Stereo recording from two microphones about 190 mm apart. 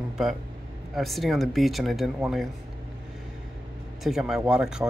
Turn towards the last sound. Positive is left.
turn(degrees=-5)  # may be behind; listen again after turning